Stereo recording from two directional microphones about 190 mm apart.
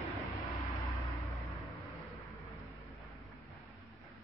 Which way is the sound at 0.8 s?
15° left (ahead or behind).